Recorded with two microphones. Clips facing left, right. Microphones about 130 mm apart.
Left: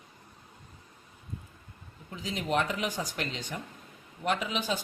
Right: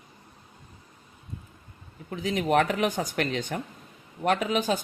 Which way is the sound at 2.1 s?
60° right (ahead or behind).